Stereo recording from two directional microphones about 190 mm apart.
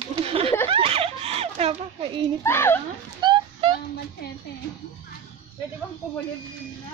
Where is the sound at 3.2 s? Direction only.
25° right (ahead or behind).